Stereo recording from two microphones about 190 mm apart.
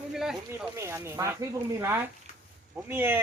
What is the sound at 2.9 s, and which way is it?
Speech, 10° right (ahead or behind).